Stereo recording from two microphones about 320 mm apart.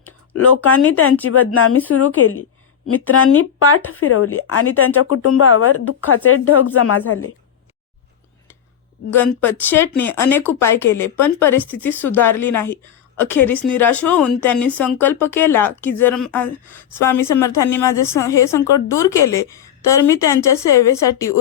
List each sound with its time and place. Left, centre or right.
0.6 s a woman's voice: left
9.1 s a woman's voice: centre